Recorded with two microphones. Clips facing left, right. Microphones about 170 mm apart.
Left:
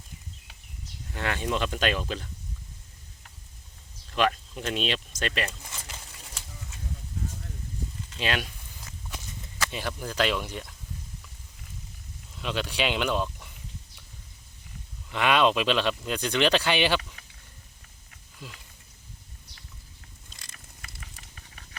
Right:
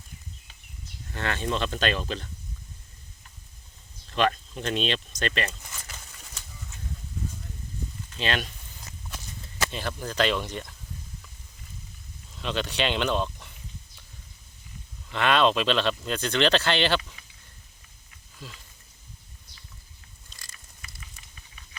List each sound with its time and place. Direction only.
1.1 s speech: 10° left (ahead or behind)
4.1 s speech: 5° left (ahead or behind)
8.2 s speech: 10° left (ahead or behind)
9.0 s walk: 15° left (ahead or behind)
9.6 s speech: 10° left (ahead or behind)
12.4 s speech: 10° left (ahead or behind)
15.1 s speech: 10° left (ahead or behind)
18.4 s speech: 15° left (ahead or behind)
20.5 s patter: 55° left (ahead or behind)